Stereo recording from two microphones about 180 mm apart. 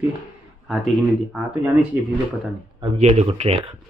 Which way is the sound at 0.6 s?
Centre (ahead or behind).